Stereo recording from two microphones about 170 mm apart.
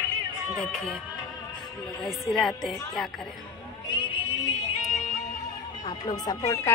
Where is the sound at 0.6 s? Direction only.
Centre (ahead or behind).